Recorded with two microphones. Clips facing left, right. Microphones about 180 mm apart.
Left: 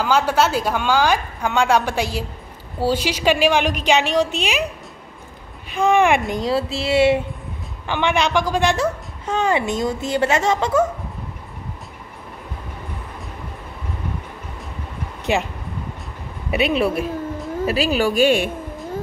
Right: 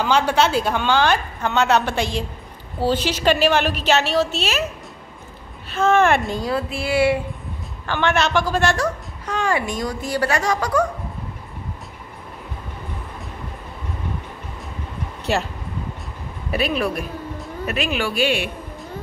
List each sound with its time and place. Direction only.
0.0 s a woman's voice: 5° left (ahead or behind)
5.7 s a woman's voice: 15° left (ahead or behind)
15.3 s a woman's voice: 15° left (ahead or behind); by 18.5 s 45° left (ahead or behind)